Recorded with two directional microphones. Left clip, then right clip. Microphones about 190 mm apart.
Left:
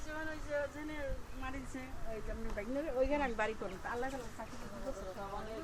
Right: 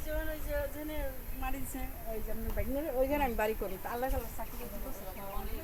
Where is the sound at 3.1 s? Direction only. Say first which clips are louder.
Right 4 dB; 55° right (ahead or behind).